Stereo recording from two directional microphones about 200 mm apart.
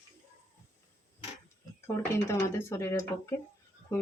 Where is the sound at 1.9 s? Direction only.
15° left (ahead or behind).